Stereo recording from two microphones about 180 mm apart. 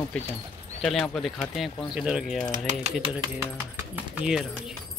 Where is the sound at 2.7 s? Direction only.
45° right (ahead or behind).